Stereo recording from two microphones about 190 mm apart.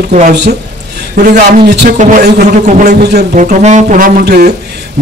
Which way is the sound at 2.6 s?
40° right (ahead or behind).